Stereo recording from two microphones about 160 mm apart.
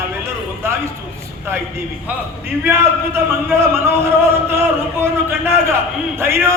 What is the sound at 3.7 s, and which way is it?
Speech, 15° right (ahead or behind).